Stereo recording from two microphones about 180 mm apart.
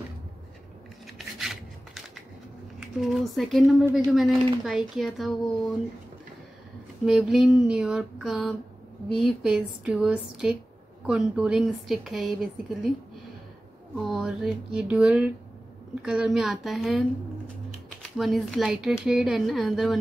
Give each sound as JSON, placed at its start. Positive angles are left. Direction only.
{"t": 1.1, "sound": "rub", "side_deg": 0}
{"t": 3.0, "sound": "a woman's voice", "side_deg": 0}
{"t": 7.1, "sound": "a woman's voice", "side_deg": -5}
{"t": 13.9, "sound": "a woman's voice", "side_deg": 0}
{"t": 18.1, "sound": "a woman's voice", "side_deg": 0}